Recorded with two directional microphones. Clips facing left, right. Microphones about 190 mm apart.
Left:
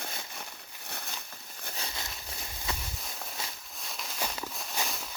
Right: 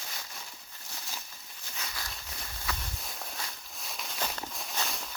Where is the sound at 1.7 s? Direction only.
25° left (ahead or behind).